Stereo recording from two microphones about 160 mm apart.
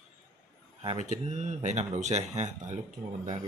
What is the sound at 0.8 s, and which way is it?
Speech, 50° right (ahead or behind).